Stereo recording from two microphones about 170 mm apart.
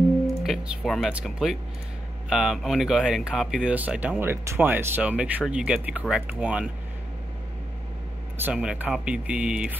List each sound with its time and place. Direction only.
0.4 s speech: centre (ahead or behind)
8.4 s speech: 10° right (ahead or behind)